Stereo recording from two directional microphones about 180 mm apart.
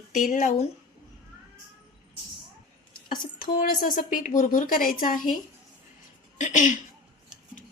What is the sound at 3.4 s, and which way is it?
Speech, 50° left (ahead or behind).